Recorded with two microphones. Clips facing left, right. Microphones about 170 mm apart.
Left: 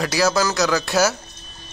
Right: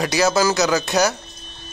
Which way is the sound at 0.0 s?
Centre (ahead or behind).